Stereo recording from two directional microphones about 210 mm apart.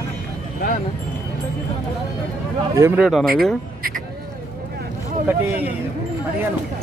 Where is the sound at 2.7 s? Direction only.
15° right (ahead or behind).